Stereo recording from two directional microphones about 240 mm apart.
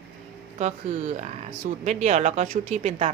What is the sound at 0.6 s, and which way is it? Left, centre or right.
Speech, right.